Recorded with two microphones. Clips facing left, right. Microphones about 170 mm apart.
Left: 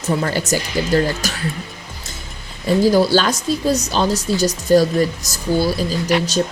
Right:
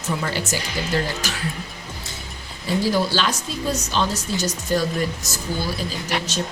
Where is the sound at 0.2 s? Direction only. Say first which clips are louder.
Left 6 dB; 45° left (ahead or behind).